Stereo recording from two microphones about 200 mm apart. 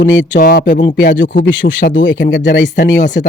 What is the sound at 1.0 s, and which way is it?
Speech, 65° left (ahead or behind).